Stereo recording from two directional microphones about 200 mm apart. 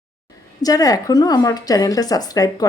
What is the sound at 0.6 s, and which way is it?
A woman's voice, 20° left (ahead or behind).